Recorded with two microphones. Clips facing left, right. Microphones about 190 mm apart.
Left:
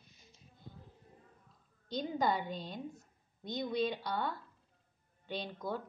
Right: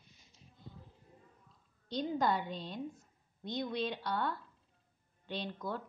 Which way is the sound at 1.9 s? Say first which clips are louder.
Right 1 dB; centre (ahead or behind).